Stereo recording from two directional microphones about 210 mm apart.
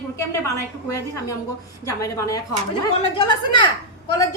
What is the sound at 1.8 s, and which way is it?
A woman's voice, 15° left (ahead or behind).